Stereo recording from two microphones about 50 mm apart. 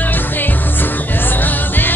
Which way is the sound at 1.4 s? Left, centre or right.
Left.